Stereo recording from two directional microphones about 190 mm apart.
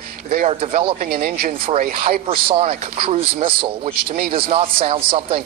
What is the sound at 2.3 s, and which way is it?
Speech, 30° right (ahead or behind).